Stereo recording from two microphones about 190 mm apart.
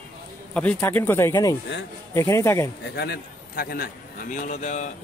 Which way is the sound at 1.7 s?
65° left (ahead or behind).